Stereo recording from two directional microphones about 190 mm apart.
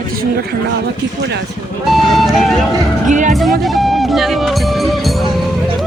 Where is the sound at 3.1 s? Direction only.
40° right (ahead or behind).